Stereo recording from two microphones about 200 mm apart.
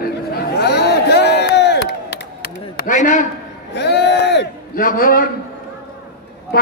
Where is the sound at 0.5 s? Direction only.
55° left (ahead or behind).